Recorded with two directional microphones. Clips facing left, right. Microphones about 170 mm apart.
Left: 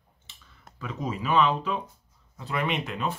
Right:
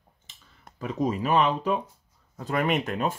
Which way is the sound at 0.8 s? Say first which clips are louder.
Right 5 dB; 40° right (ahead or behind).